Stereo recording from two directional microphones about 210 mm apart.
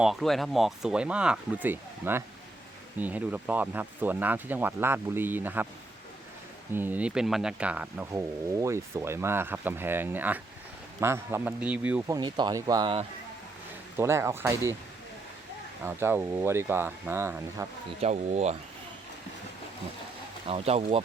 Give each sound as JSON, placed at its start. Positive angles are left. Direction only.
{"t": 0.0, "sound": "speech", "side_deg": 0}
{"t": 6.7, "sound": "speech", "side_deg": -10}
{"t": 12.1, "sound": "speech", "side_deg": -20}
{"t": 15.8, "sound": "speech", "side_deg": -10}
{"t": 18.0, "sound": "speech", "side_deg": -30}
{"t": 20.5, "sound": "speech", "side_deg": -30}